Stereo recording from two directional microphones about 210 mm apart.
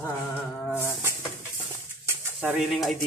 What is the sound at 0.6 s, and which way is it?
Speech, 10° left (ahead or behind).